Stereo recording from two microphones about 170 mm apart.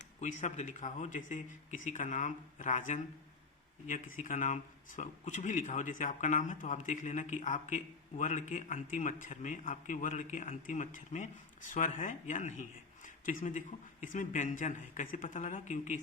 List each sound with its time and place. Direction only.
0.2 s speech: 45° left (ahead or behind)